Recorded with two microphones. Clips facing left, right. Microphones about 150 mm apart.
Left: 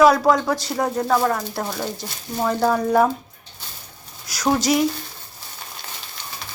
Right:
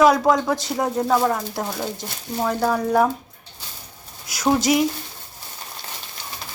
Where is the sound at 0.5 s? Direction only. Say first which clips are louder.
Even; 20° right (ahead or behind); by 3.1 s centre (ahead or behind).